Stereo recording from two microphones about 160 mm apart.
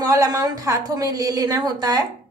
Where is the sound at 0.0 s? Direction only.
20° right (ahead or behind).